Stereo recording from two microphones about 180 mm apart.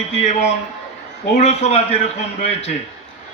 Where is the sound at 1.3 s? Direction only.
35° left (ahead or behind).